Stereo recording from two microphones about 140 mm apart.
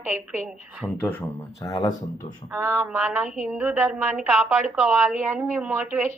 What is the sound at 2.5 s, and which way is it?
A woman's voice, 15° right (ahead or behind).